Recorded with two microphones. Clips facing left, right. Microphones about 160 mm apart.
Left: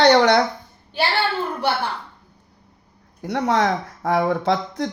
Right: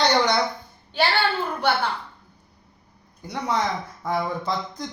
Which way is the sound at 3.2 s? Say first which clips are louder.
Left 6 dB; 80° left.